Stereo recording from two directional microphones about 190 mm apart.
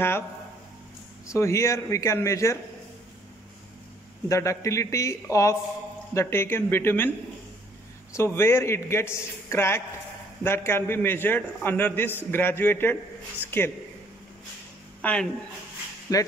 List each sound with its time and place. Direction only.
1.2 s a man's voice: 15° left (ahead or behind)
4.3 s a man's voice: 15° left (ahead or behind)
8.1 s a man's voice: 15° left (ahead or behind)
15.0 s speech: 5° left (ahead or behind)
16.1 s a man's voice: 20° left (ahead or behind)